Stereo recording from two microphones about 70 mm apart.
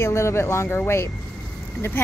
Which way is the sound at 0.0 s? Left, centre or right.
Left.